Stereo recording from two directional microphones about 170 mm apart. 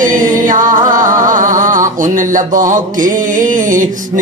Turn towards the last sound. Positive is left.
turn(degrees=-50)  # may be behind; listen again after turning